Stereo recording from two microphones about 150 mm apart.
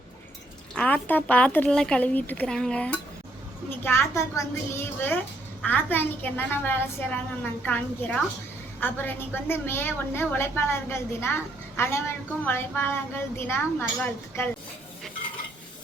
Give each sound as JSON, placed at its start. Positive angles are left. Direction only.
{"t": 0.7, "sound": "a woman's voice", "side_deg": 5}